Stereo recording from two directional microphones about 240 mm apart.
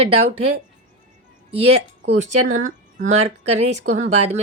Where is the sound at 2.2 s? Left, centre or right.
Right.